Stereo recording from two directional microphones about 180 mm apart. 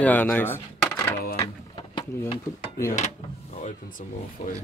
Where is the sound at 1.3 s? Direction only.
20° left (ahead or behind).